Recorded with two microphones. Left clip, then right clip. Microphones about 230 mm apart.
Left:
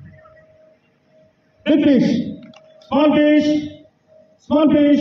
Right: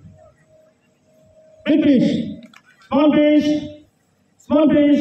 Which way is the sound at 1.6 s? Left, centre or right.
Left.